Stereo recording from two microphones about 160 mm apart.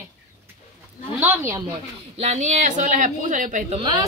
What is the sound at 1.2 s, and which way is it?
Speech, 15° right (ahead or behind).